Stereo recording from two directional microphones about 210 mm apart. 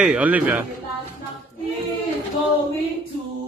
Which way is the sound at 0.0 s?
5° right (ahead or behind).